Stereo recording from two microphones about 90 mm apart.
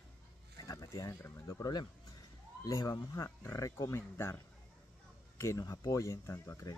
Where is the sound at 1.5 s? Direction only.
45° left (ahead or behind).